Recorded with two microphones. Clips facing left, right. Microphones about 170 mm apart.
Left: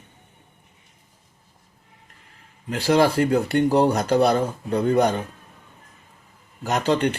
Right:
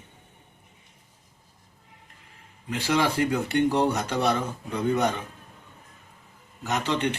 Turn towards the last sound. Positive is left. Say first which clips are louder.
# left 5 dB
turn(degrees=35)  # may be behind; listen again after turning